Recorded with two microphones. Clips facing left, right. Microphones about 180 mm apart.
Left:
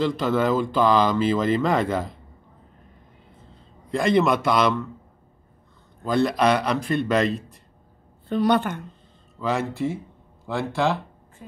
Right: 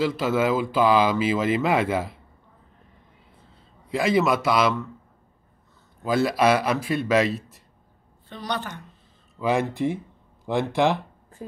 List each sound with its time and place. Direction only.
0.0 s speech: 5° right (ahead or behind)
3.9 s a man's voice: 5° right (ahead or behind)
6.0 s a man's voice: 5° right (ahead or behind)
8.5 s speech: 55° left (ahead or behind)
9.4 s speech: 15° right (ahead or behind)